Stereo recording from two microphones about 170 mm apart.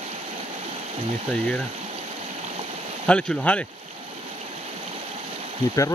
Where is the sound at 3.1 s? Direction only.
5° left (ahead or behind).